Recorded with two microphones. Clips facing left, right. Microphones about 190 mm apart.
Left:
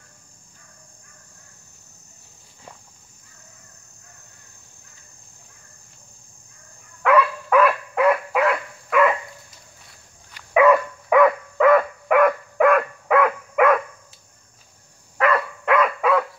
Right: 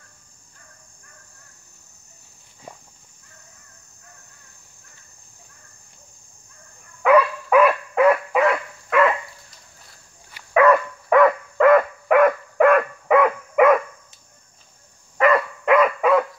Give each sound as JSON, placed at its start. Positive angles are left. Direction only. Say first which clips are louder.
{"t": 7.0, "sound": "dog", "louder": "right 2 dB", "side_deg": -10}
{"t": 10.5, "sound": "dog", "louder": "even", "side_deg": 10}
{"t": 15.1, "sound": "dog", "louder": "right 3 dB", "side_deg": 0}